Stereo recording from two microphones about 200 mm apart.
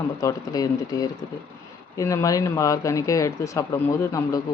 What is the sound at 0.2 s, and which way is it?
Speech, 15° left (ahead or behind).